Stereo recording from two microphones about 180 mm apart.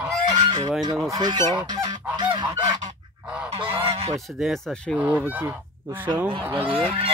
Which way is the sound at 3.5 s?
30° right (ahead or behind).